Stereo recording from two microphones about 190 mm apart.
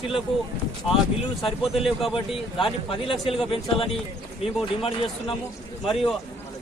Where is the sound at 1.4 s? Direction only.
30° left (ahead or behind).